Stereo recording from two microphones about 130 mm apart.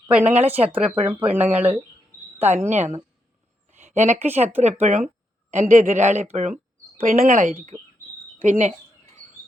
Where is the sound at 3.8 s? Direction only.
65° right (ahead or behind).